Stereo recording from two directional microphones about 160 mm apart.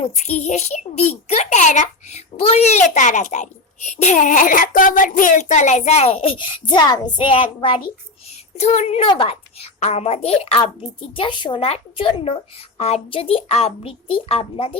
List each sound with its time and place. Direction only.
0.0 s a child's voice: 45° left (ahead or behind)
8.5 s a woman's voice: 45° left (ahead or behind)